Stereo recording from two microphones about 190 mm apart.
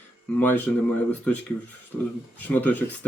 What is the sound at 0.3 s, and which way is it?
Speech, 10° left (ahead or behind).